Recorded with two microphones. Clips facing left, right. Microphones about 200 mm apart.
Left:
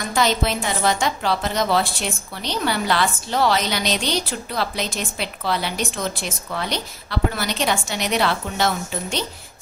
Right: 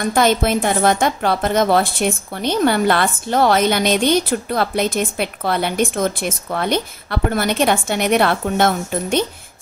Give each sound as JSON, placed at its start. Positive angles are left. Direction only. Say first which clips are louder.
{"t": 0.0, "sound": "a woman's voice", "louder": "right 5 dB", "side_deg": -55}